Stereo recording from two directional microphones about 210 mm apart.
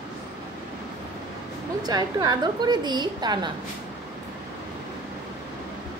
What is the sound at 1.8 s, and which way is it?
A woman's voice, 20° right (ahead or behind).